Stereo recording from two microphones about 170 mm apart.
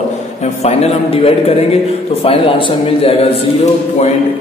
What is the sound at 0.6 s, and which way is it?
A man's voice, 35° left (ahead or behind).